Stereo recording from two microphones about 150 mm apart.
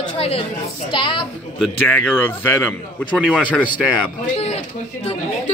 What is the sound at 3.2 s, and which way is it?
Speech, 5° right (ahead or behind).